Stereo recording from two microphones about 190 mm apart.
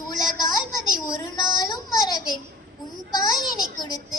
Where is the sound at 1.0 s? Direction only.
20° left (ahead or behind).